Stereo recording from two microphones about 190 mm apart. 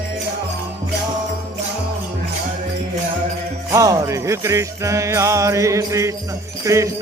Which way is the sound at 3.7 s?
15° right (ahead or behind).